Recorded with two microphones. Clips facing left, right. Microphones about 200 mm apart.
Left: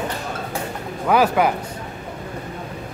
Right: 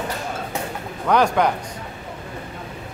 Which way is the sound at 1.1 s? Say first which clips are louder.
Left 1 dB; 5° left (ahead or behind).